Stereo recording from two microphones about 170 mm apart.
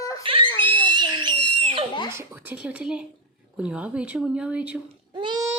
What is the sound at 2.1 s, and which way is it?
A woman's voice, 15° right (ahead or behind).